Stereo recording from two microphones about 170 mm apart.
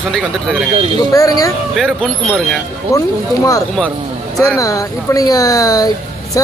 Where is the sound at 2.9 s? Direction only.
20° left (ahead or behind).